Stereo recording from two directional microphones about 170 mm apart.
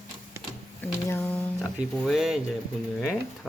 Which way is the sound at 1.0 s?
10° left (ahead or behind).